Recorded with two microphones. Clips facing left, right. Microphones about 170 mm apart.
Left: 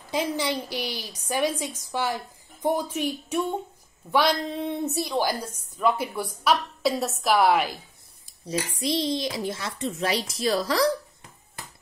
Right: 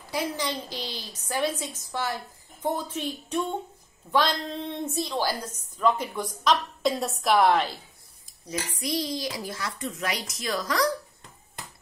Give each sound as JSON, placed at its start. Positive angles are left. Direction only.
{"t": 0.1, "sound": "a woman's voice", "side_deg": 15}
{"t": 8.5, "sound": "a child's voice", "side_deg": 25}